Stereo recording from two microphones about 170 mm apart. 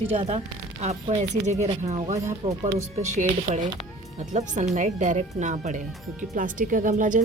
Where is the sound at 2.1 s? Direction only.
15° right (ahead or behind).